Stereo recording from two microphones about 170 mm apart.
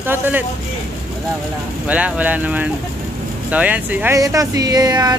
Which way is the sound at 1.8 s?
10° right (ahead or behind).